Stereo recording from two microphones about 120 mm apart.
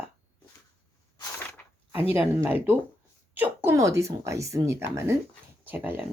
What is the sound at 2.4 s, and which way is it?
Speech, 15° right (ahead or behind).